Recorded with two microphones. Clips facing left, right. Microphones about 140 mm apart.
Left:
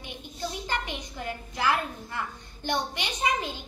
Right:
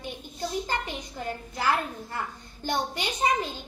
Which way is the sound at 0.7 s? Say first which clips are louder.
Right 1 dB; 40° right (ahead or behind).